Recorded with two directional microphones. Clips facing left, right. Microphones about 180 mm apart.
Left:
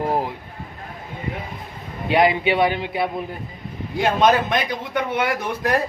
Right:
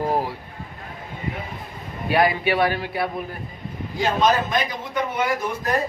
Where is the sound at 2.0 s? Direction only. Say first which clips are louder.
Left 2 dB; 20° left (ahead or behind).